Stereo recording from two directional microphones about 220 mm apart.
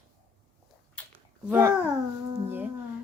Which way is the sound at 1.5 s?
10° right (ahead or behind).